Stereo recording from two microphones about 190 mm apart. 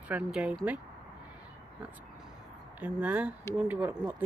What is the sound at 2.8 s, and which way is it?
Speech, 5° right (ahead or behind).